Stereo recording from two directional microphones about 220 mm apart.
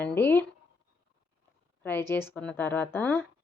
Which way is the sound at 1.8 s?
10° left (ahead or behind).